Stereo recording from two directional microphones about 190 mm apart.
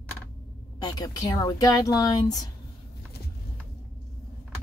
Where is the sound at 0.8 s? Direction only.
20° left (ahead or behind).